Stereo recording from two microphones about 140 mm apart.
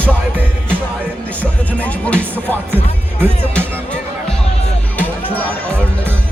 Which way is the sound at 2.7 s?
15° right (ahead or behind).